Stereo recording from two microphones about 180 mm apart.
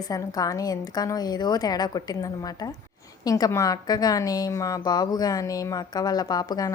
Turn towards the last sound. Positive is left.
turn(degrees=20)  # may be behind; listen again after turning